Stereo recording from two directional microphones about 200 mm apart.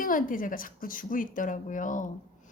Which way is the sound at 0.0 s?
45° left (ahead or behind).